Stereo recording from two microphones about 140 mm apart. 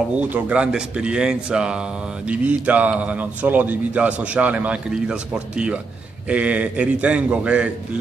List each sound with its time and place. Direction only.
0.2 s speech: 10° right (ahead or behind)